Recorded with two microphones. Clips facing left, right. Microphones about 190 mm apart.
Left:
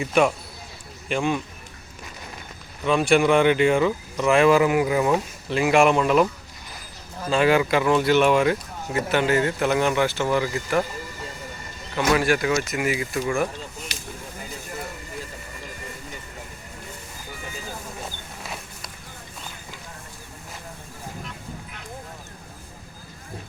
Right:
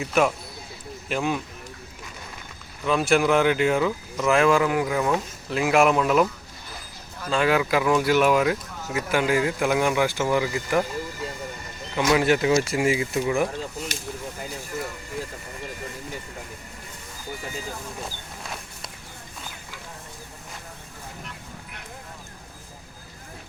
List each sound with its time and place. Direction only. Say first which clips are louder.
0.0 s speech: left 2 dB; centre (ahead or behind)
2.8 s speech: left 2 dB; centre (ahead or behind)
7.3 s speech: left 2 dB; 5° left (ahead or behind); by 10.8 s 15° right (ahead or behind)
11.9 s speech: right 1 dB; 20° right (ahead or behind)
13.9 s a sound: right 3 dB; 50° right (ahead or behind)
18.0 s vehicle: even; centre (ahead or behind)